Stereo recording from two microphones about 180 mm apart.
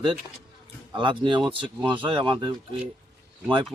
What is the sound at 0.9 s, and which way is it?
Speech, 25° right (ahead or behind).